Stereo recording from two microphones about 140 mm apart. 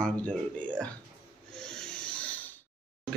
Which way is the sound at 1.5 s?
5° left (ahead or behind).